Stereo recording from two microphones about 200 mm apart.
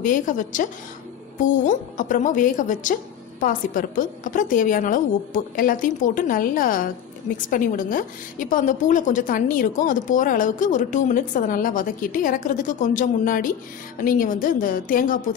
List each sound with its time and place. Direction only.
0.0 s a woman's voice: 40° left (ahead or behind)